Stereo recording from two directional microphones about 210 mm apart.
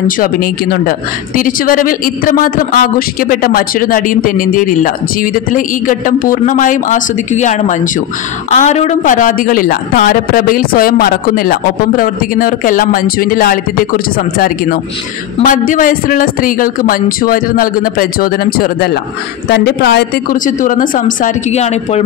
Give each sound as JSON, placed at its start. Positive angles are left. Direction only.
{"t": 0.2, "sound": "speech", "side_deg": 45}